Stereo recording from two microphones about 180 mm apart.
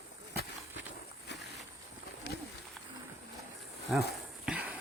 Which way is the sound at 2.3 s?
75° left (ahead or behind).